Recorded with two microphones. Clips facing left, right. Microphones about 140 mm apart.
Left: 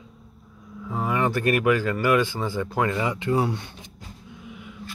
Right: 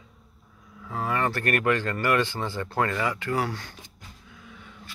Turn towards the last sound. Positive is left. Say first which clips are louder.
# left 7 dB
turn(degrees=15)  # may be behind; listen again after turning